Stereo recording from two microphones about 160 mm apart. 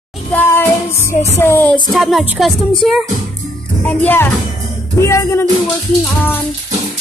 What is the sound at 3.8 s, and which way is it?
Music, 10° left (ahead or behind).